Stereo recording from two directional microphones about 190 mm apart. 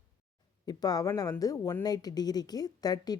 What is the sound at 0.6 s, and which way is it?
Speech, 20° left (ahead or behind).